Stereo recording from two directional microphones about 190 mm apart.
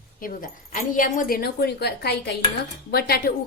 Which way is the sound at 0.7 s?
45° left (ahead or behind).